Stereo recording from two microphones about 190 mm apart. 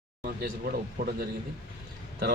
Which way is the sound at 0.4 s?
50° right (ahead or behind).